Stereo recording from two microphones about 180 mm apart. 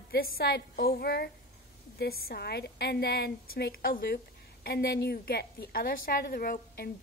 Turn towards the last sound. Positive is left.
turn(degrees=55)  # may be behind; listen again after turning